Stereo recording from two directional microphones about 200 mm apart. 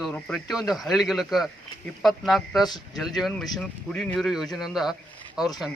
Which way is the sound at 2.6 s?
20° left (ahead or behind).